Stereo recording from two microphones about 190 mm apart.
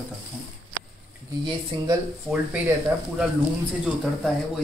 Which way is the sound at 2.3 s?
10° right (ahead or behind).